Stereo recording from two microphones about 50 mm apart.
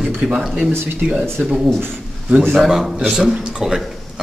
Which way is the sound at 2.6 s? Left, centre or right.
Centre.